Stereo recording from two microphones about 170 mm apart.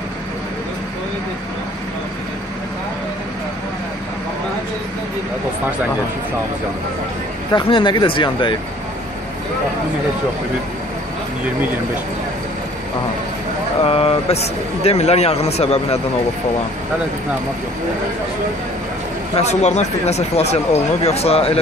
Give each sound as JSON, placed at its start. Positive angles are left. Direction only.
{"t": 7.5, "sound": "speech", "side_deg": 30}
{"t": 13.8, "sound": "speech", "side_deg": 35}
{"t": 19.3, "sound": "speech", "side_deg": 40}